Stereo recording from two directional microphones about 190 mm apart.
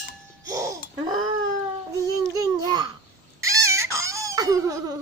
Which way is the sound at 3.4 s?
15° right (ahead or behind).